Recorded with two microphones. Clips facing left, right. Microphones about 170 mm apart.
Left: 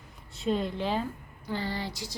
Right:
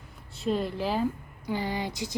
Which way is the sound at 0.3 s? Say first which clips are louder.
Right 1 dB; centre (ahead or behind).